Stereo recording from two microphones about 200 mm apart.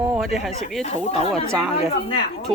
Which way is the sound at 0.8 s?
30° left (ahead or behind).